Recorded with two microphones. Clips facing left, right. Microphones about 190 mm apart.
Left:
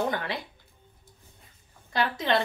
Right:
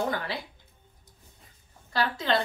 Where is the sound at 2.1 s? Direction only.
20° left (ahead or behind).